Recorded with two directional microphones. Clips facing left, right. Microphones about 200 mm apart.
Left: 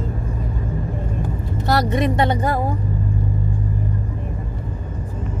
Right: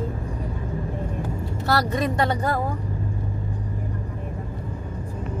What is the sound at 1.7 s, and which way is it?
Speech, 20° left (ahead or behind).